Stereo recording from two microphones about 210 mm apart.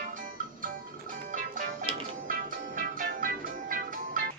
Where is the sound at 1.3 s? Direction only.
40° right (ahead or behind).